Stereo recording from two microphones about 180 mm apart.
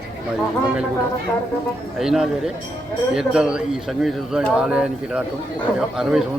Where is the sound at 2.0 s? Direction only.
Centre (ahead or behind).